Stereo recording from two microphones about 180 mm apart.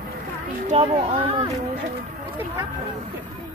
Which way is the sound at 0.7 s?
35° right (ahead or behind).